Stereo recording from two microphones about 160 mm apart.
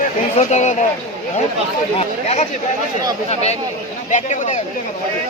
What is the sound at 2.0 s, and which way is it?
Speech, 45° left (ahead or behind).